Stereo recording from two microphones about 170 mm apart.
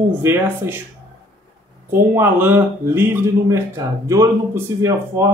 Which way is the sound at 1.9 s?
10° right (ahead or behind).